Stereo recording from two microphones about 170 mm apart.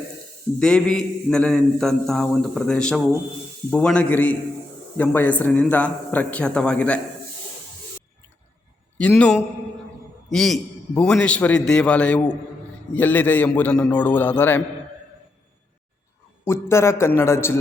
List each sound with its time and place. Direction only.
0.6 s a man's voice: 5° left (ahead or behind)
9.0 s a man's voice: 5° left (ahead or behind)
16.4 s a man's voice: 15° left (ahead or behind)